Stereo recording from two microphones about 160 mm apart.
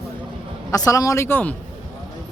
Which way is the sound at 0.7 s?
20° left (ahead or behind).